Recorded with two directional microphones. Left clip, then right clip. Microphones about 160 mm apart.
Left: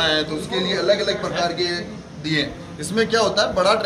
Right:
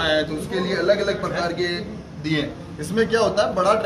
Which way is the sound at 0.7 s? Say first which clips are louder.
Even; centre (ahead or behind).